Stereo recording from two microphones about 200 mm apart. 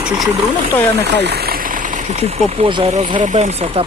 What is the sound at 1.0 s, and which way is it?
Speech, 55° right (ahead or behind).